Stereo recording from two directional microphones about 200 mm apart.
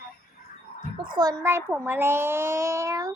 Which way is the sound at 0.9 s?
25° right (ahead or behind).